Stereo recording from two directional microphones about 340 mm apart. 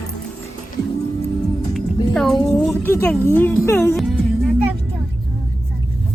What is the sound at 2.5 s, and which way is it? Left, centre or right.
Speech, centre.